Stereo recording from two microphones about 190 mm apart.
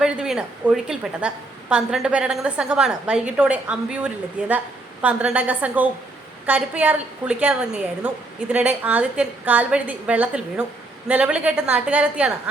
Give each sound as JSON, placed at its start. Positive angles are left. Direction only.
{"t": 0.0, "sound": "a woman's voice", "side_deg": -5}